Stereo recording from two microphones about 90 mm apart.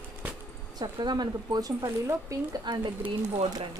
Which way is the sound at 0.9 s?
50° right (ahead or behind).